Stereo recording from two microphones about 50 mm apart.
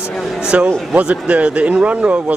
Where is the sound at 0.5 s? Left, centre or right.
Right.